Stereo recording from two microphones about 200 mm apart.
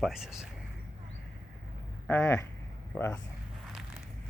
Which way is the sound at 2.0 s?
10° left (ahead or behind).